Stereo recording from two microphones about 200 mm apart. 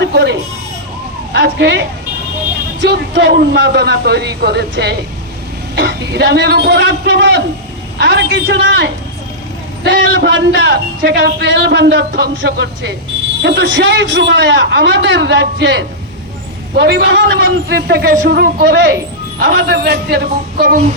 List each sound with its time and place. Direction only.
0.0 s a man's voice: 60° right (ahead or behind)